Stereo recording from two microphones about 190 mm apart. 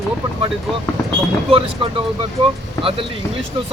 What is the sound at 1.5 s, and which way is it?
Speech, 30° right (ahead or behind).